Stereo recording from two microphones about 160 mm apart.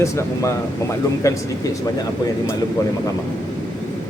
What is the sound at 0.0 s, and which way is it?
Speech, 20° left (ahead or behind).